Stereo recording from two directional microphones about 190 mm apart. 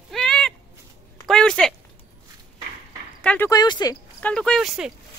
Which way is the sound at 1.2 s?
5° left (ahead or behind).